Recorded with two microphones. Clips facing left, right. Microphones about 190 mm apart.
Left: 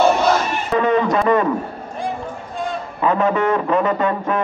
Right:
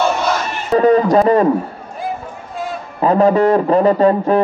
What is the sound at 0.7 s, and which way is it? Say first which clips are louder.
Speech: right 6 dB; 35° right (ahead or behind).